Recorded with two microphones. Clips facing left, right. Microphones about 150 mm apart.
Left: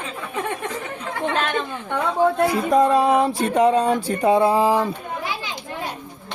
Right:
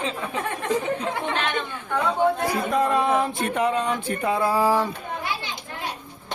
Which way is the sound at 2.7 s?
35° left (ahead or behind).